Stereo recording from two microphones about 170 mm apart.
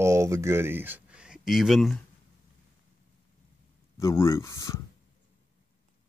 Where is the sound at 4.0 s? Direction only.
15° left (ahead or behind).